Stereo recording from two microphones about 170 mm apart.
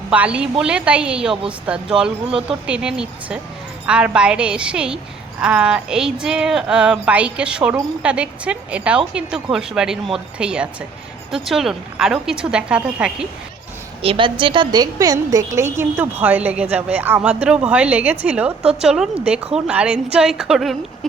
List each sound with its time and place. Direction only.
0.1 s speech: 5° right (ahead or behind)
14.0 s a woman's voice: 30° right (ahead or behind); by 20.7 s centre (ahead or behind)